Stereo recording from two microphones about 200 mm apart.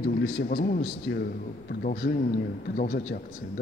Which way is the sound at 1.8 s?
50° left (ahead or behind).